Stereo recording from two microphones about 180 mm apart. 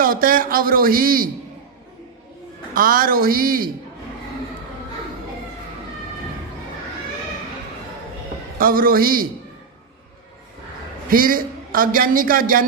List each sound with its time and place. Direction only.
0.0 s a man's voice: 50° right (ahead or behind)
2.7 s a man's voice: 50° right (ahead or behind)
8.5 s a man's voice: 55° right (ahead or behind)
11.1 s a man's voice: 50° right (ahead or behind)